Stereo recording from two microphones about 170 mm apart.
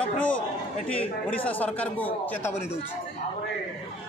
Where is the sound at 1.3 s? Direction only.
10° left (ahead or behind).